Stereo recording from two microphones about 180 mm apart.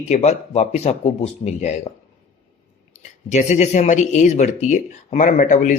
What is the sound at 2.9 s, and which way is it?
Speech, 40° left (ahead or behind).